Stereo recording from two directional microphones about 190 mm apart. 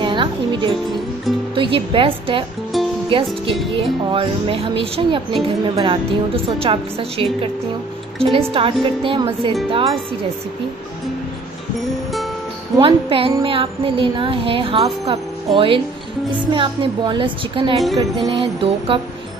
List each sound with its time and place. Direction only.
0.0 s music: 25° right (ahead or behind)
1.5 s a woman's voice: 25° right (ahead or behind)
12.7 s a woman's voice: 30° right (ahead or behind)